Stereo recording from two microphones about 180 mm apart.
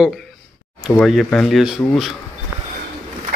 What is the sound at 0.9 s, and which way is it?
Speech, 5° left (ahead or behind).